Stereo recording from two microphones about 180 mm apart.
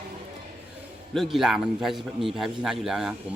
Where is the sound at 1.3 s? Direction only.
Centre (ahead or behind).